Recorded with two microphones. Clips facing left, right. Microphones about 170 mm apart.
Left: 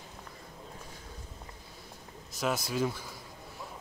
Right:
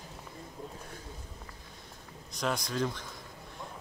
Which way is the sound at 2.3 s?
5° left (ahead or behind).